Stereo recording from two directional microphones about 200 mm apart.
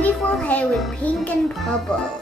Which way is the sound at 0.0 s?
5° left (ahead or behind).